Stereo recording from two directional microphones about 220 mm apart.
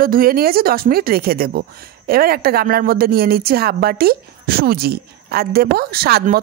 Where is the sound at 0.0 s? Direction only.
40° right (ahead or behind).